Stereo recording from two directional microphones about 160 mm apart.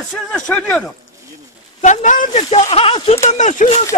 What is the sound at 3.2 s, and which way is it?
Speech, 50° left (ahead or behind).